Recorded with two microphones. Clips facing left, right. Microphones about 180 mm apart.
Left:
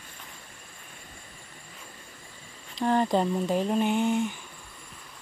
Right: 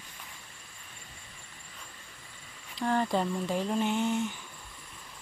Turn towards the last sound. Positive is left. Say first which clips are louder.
# left 4 dB
turn(degrees=15)  # may be behind; listen again after turning